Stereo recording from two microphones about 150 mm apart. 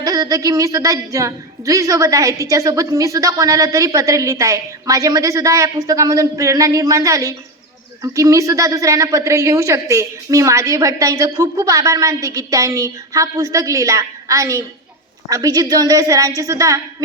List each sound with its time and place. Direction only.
0.0 s a woman's voice: 25° right (ahead or behind)